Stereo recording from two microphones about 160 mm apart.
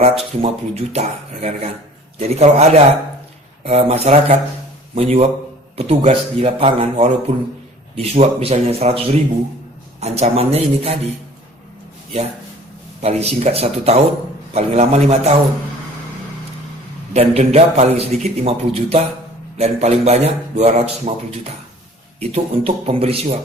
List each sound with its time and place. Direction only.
0.0 s a man's voice: 40° right (ahead or behind)
13.0 s a man's voice: 40° right (ahead or behind)
17.2 s a man's voice: 40° right (ahead or behind)